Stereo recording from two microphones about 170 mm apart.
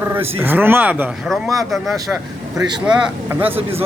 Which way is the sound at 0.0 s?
10° right (ahead or behind).